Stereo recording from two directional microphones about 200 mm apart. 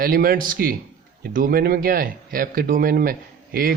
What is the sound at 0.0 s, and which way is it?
Speech, 45° right (ahead or behind).